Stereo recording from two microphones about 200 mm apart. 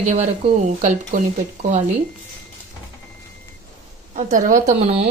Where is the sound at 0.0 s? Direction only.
35° right (ahead or behind).